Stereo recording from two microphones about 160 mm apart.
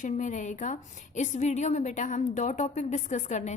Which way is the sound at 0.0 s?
50° left (ahead or behind).